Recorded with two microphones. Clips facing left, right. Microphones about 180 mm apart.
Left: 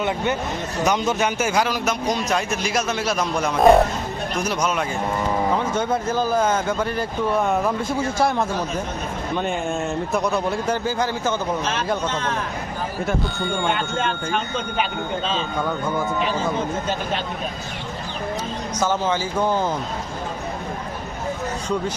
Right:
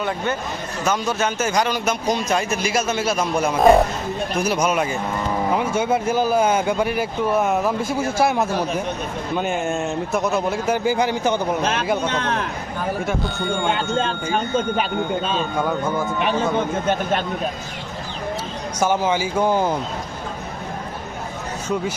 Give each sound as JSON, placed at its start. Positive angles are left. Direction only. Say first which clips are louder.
{"t": 0.9, "sound": "a man's voice", "louder": "even", "side_deg": 15}
{"t": 10.8, "sound": "speech", "louder": "right 3 dB", "side_deg": -15}
{"t": 12.0, "sound": "speech", "louder": "right 2 dB", "side_deg": -65}
{"t": 13.1, "sound": "a man's voice", "louder": "right 1 dB", "side_deg": 0}
{"t": 13.9, "sound": "speech", "louder": "right 2 dB", "side_deg": -30}
{"t": 15.5, "sound": "a man's voice", "louder": "right 2 dB", "side_deg": 0}
{"t": 16.2, "sound": "speech", "louder": "right 3 dB", "side_deg": -60}
{"t": 18.8, "sound": "speech", "louder": "right 3 dB", "side_deg": -10}